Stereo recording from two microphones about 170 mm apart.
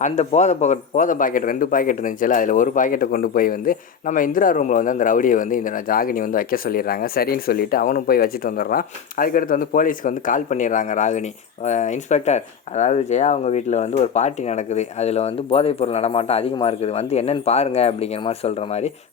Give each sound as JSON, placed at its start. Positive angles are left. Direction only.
{"t": 0.0, "sound": "a man's voice", "side_deg": 40}